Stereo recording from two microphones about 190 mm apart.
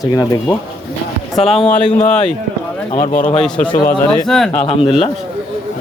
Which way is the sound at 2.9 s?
40° left (ahead or behind).